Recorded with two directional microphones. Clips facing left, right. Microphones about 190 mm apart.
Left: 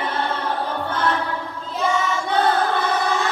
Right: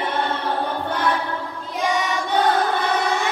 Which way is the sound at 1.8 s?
15° right (ahead or behind).